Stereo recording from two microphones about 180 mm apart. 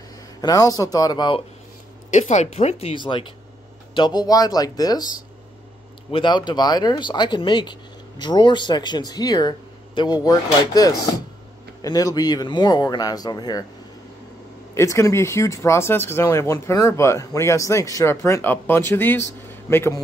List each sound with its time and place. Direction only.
0.4 s speech: 20° left (ahead or behind)
2.0 s speech: 40° left (ahead or behind); by 5.1 s 20° left (ahead or behind)
6.1 s speech: 25° left (ahead or behind)
14.7 s speech: 15° left (ahead or behind)